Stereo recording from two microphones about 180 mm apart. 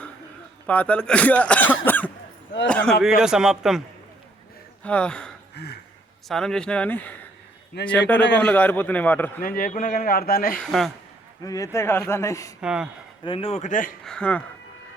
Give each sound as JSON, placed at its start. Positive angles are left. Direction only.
{"t": 0.7, "sound": "speech", "side_deg": 10}
{"t": 5.6, "sound": "a man's voice", "side_deg": 65}
{"t": 6.2, "sound": "speech", "side_deg": 0}
{"t": 8.2, "sound": "a man's voice", "side_deg": 75}
{"t": 8.4, "sound": "speech", "side_deg": 10}
{"t": 9.4, "sound": "speech", "side_deg": 50}
{"t": 10.6, "sound": "speech", "side_deg": 0}
{"t": 11.4, "sound": "speech", "side_deg": 20}
{"t": 12.6, "sound": "speech", "side_deg": -5}
{"t": 13.2, "sound": "a man's voice", "side_deg": 30}
{"t": 14.0, "sound": "speech", "side_deg": 5}